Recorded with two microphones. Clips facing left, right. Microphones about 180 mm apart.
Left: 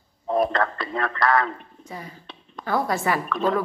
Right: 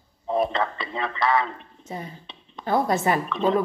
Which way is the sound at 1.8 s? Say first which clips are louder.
Right 3 dB; 25° right (ahead or behind).